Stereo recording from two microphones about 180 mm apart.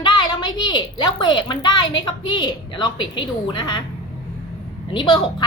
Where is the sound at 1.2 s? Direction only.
25° left (ahead or behind).